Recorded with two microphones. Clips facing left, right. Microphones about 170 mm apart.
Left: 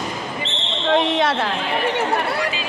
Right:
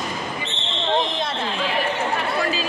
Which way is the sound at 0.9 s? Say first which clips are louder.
Left 6 dB; 75° left (ahead or behind).